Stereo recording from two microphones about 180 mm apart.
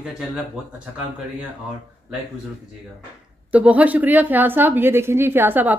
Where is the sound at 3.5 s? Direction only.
10° right (ahead or behind).